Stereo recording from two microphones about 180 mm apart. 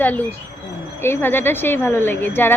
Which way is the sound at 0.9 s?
15° left (ahead or behind).